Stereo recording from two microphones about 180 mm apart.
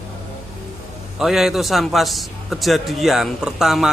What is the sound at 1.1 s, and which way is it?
A man's voice, centre (ahead or behind).